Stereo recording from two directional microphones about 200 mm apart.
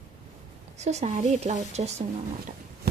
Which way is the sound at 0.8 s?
35° right (ahead or behind).